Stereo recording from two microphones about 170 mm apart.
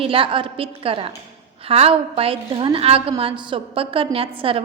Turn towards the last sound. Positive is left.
turn(degrees=-35)  # may be behind; listen again after turning